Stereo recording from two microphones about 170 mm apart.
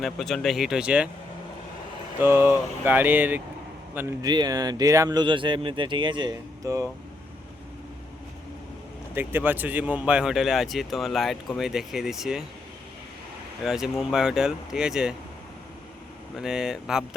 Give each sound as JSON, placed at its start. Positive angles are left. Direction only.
{"t": 0.0, "sound": "speech", "side_deg": 0}
{"t": 2.1, "sound": "speech", "side_deg": -10}
{"t": 9.1, "sound": "speech", "side_deg": -10}
{"t": 13.7, "sound": "speech", "side_deg": 0}
{"t": 16.4, "sound": "speech", "side_deg": -5}